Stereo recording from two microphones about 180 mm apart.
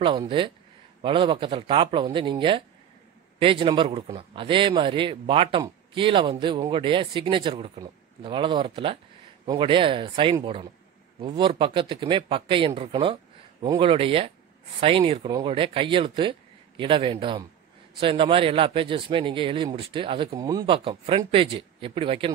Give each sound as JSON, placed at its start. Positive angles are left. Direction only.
{"t": 0.0, "sound": "a man's voice", "side_deg": -25}